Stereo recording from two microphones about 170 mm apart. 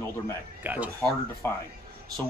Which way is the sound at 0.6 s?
10° right (ahead or behind).